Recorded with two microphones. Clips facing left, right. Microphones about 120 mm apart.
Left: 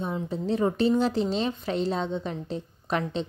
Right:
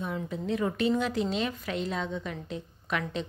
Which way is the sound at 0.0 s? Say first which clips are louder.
Left 3 dB; 30° left (ahead or behind).